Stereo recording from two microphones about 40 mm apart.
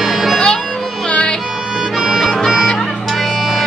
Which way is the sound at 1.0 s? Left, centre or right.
Left.